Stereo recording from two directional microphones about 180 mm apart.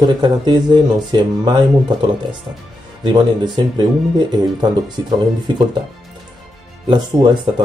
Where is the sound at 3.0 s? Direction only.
25° right (ahead or behind).